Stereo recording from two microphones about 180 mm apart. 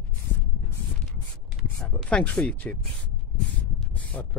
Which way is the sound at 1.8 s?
5° left (ahead or behind).